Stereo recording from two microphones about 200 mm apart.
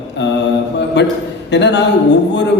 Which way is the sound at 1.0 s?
60° left (ahead or behind).